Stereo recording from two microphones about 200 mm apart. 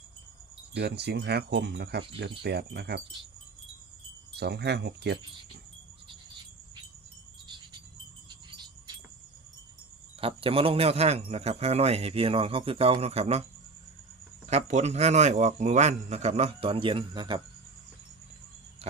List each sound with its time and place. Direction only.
0.7 s speech: 55° right (ahead or behind)
4.4 s speech: 55° right (ahead or behind)
7.4 s a sound: 20° right (ahead or behind)
10.2 s a man's voice: 25° right (ahead or behind)
14.5 s a man's voice: 35° right (ahead or behind)